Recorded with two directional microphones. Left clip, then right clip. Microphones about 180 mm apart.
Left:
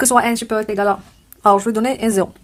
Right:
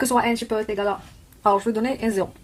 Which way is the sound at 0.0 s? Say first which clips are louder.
Left 6 dB; 40° left (ahead or behind).